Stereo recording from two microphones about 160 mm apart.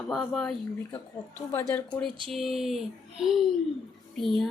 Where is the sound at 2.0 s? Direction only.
30° right (ahead or behind).